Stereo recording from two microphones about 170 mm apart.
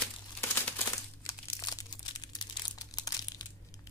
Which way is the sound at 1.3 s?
20° left (ahead or behind).